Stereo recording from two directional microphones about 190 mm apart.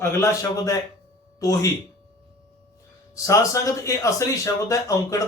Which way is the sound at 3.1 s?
15° left (ahead or behind).